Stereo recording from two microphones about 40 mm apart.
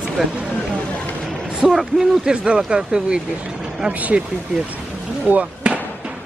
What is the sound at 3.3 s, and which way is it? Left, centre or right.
Vehicle, right.